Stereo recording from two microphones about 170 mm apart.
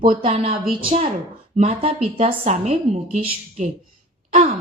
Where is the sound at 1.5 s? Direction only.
35° right (ahead or behind).